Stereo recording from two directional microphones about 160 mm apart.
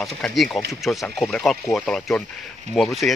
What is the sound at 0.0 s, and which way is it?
Speech, centre (ahead or behind).